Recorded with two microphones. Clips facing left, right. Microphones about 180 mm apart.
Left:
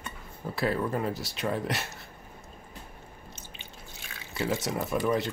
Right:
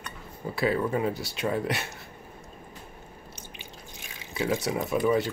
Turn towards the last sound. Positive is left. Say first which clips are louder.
# right 3 dB
turn(degrees=0)  # may be behind; listen again after turning